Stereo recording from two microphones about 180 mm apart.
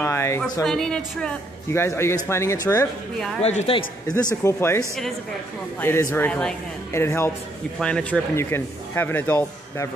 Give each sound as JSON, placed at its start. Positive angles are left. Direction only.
{"t": 0.0, "sound": "a sound", "side_deg": 15}
{"t": 0.7, "sound": "speech", "side_deg": 5}
{"t": 3.4, "sound": "a man's voice", "side_deg": 35}
{"t": 4.3, "sound": "speech", "side_deg": 15}